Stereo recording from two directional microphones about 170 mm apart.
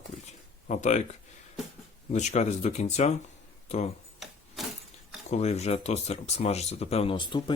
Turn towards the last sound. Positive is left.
turn(degrees=30)  # may be behind; listen again after turning